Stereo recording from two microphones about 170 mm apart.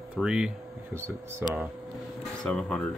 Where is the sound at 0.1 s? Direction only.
5° right (ahead or behind).